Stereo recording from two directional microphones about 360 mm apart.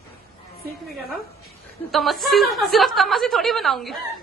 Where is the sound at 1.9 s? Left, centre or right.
Centre.